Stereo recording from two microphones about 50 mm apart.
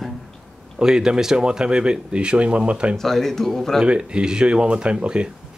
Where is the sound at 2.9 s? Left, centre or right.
Centre.